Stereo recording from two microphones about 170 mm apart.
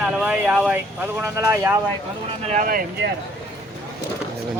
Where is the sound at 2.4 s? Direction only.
50° right (ahead or behind).